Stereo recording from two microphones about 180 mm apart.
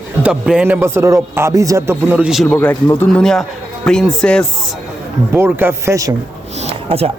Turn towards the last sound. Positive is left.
turn(degrees=-35)  # may be behind; listen again after turning